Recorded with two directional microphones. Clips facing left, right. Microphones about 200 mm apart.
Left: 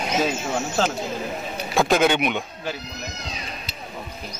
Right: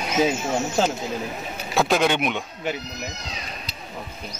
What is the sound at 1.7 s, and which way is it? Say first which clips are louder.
Speech: left 2 dB; centre (ahead or behind).